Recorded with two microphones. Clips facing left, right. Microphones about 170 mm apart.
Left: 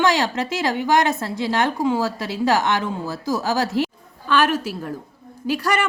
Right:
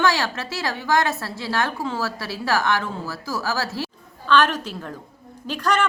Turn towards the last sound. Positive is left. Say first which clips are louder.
# left 1 dB
turn(degrees=10)  # may be behind; listen again after turning